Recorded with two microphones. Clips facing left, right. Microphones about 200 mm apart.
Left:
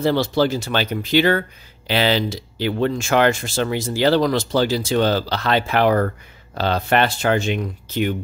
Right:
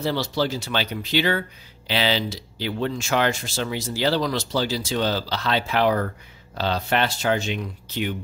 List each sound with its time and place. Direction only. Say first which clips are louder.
0.0 s speech: left 6 dB; 55° left (ahead or behind)